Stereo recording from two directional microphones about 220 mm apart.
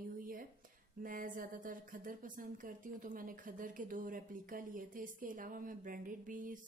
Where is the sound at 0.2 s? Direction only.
40° right (ahead or behind).